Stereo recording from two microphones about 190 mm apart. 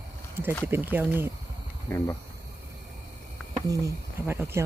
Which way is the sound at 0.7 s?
10° right (ahead or behind).